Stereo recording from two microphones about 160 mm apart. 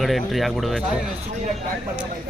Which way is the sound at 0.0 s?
Centre (ahead or behind).